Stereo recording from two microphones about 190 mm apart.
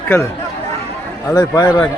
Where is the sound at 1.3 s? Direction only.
20° left (ahead or behind).